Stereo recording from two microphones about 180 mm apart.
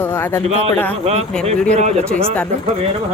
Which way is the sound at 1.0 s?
35° right (ahead or behind).